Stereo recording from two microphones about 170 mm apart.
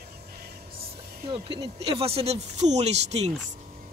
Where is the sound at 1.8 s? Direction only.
35° right (ahead or behind).